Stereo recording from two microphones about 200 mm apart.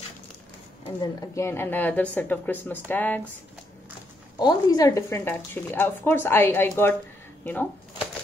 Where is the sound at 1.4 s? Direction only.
10° left (ahead or behind).